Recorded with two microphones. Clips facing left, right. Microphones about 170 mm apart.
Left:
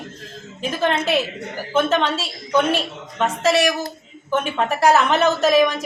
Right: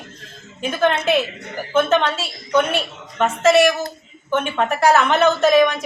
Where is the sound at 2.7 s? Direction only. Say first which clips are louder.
Right 2 dB; centre (ahead or behind).